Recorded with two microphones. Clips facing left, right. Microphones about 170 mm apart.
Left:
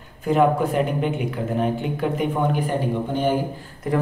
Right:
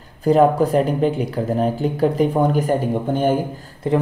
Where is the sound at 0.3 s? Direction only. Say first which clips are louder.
Right 4 dB; 35° right (ahead or behind).